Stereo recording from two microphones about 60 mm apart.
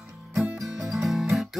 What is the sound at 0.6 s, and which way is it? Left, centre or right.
Music, centre.